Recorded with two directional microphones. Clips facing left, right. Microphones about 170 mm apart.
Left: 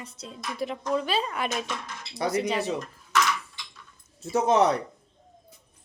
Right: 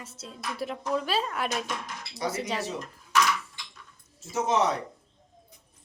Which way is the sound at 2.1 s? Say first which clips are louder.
Left 5 dB; 60° left (ahead or behind).